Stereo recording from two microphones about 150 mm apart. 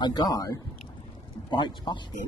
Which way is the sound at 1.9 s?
30° left (ahead or behind).